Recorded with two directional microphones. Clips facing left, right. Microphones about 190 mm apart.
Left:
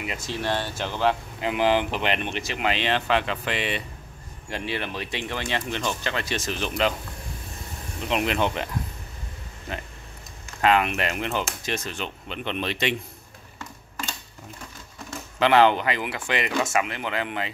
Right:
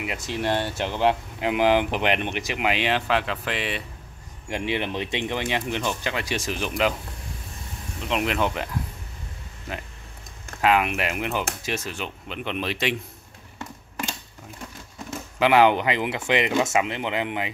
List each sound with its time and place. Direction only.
0.0 s speech: 15° right (ahead or behind)
4.5 s speech: 15° right (ahead or behind)
8.1 s speech: centre (ahead or behind)
9.7 s speech: 5° right (ahead or behind)
15.3 s speech: 10° right (ahead or behind)